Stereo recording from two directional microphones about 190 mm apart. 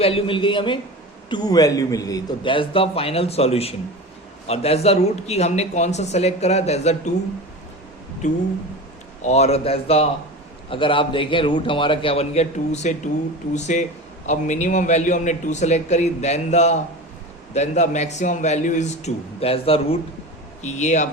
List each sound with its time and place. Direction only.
0.0 s a man's voice: 30° left (ahead or behind)
8.2 s a man's voice: 40° left (ahead or behind)